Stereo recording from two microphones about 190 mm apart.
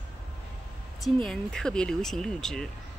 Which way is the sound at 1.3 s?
5° left (ahead or behind).